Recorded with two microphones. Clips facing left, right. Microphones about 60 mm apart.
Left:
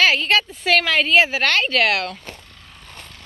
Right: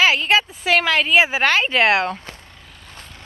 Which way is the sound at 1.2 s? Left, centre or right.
Centre.